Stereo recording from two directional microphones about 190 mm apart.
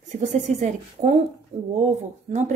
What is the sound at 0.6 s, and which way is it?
Speech, 35° right (ahead or behind).